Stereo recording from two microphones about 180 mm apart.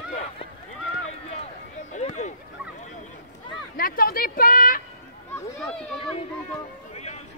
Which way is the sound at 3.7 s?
50° left (ahead or behind).